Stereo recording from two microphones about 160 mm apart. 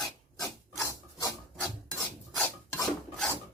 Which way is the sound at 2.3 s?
5° left (ahead or behind).